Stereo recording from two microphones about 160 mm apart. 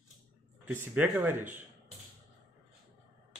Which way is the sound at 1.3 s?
50° right (ahead or behind).